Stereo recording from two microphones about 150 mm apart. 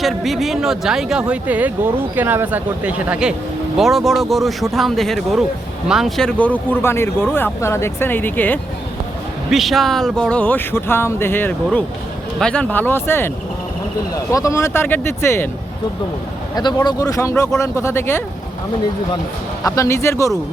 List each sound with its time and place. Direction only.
0.0 s speech: centre (ahead or behind)
9.5 s speech: centre (ahead or behind); by 13.3 s 15° left (ahead or behind)
14.3 s speech: 20° left (ahead or behind)
16.6 s speech: 25° left (ahead or behind)
19.6 s speech: 20° left (ahead or behind)